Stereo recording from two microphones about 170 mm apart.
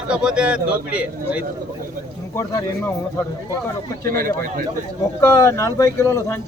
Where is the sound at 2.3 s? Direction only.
20° left (ahead or behind).